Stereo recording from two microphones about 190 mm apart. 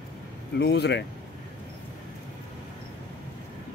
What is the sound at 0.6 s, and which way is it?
Speech, 60° left (ahead or behind).